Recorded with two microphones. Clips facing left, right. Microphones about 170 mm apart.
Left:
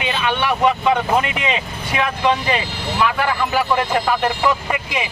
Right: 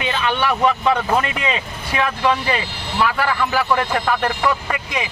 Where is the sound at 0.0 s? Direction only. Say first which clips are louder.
Even; 20° left (ahead or behind).